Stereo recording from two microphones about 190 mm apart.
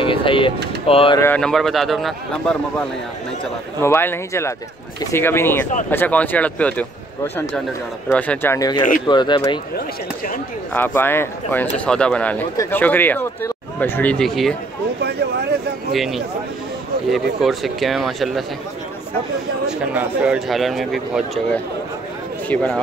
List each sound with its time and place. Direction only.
0.0 s a sound: 25° left (ahead or behind)
0.8 s speech: 30° left (ahead or behind)
1.2 s a man's voice: 5° left (ahead or behind)
3.8 s speech: 10° left (ahead or behind)
8.1 s speech: 5° left (ahead or behind); by 9.6 s 25° left (ahead or behind)
9.8 s speech: 45° left (ahead or behind)
10.7 s speech: 10° left (ahead or behind)
15.0 s a sound: 60° right (ahead or behind)
15.9 s a man's voice: centre (ahead or behind)
19.8 s a man's voice: 5° right (ahead or behind)